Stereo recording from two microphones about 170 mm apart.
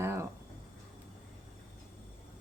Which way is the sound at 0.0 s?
15° right (ahead or behind).